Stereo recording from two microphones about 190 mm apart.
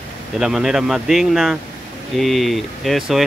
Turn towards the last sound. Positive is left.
turn(degrees=0)  # may be behind; listen again after turning